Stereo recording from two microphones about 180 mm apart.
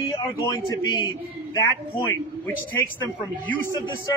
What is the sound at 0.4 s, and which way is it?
A man's voice, 20° left (ahead or behind).